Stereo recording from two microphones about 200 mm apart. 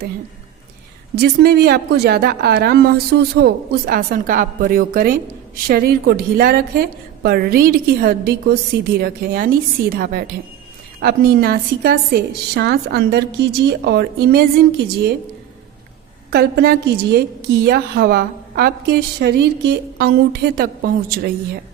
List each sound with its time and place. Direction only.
1.1 s a woman's voice: 50° right (ahead or behind)
16.3 s a woman's voice: 50° right (ahead or behind)